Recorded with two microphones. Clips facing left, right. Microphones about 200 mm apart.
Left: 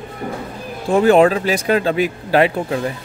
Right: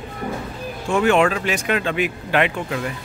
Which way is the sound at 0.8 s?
35° left (ahead or behind).